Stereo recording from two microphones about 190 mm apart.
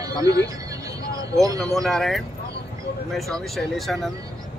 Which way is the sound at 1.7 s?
Centre (ahead or behind).